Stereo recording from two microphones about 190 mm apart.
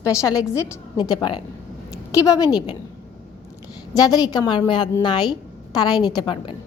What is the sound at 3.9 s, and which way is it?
A woman's voice, 20° left (ahead or behind).